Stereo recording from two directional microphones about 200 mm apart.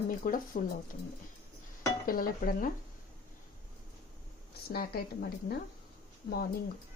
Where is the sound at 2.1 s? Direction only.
45° left (ahead or behind).